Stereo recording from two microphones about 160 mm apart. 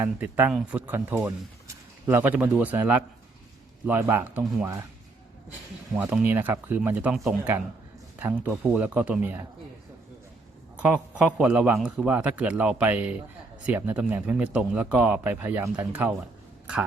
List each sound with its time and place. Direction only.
0.0 s speech: 15° right (ahead or behind)
6.0 s speech: 10° right (ahead or behind)
10.8 s speech: 5° right (ahead or behind)